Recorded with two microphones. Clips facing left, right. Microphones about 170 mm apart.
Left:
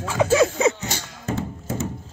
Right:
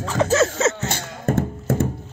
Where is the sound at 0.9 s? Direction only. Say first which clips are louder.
Right 5 dB; 55° right (ahead or behind).